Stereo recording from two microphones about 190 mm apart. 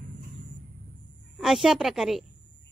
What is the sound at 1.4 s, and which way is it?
Speech, centre (ahead or behind).